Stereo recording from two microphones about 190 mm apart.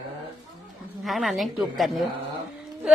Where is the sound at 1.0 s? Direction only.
Centre (ahead or behind).